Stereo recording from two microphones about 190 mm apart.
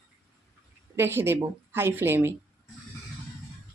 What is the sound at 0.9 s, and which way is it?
Speech, 10° right (ahead or behind).